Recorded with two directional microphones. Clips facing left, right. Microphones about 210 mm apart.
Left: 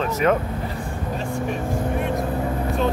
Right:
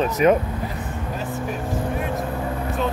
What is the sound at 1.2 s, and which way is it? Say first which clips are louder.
Speech: left 2 dB; centre (ahead or behind).